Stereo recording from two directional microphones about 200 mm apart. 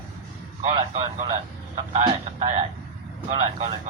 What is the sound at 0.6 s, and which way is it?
Speech, 25° right (ahead or behind).